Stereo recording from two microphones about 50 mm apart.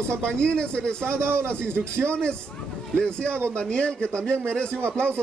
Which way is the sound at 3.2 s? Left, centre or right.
Right.